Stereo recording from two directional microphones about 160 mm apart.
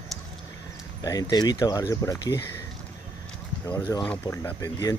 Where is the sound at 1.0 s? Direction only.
25° left (ahead or behind).